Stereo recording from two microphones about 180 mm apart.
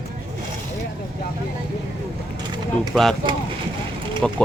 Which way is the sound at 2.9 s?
Centre (ahead or behind).